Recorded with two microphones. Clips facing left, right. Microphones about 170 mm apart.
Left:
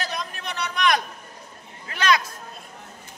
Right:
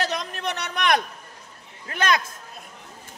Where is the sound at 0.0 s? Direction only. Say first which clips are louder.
Right 4 dB; 75° right (ahead or behind); by 2.2 s 50° right (ahead or behind).